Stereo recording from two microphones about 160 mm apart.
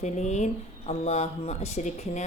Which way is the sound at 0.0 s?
45° left (ahead or behind).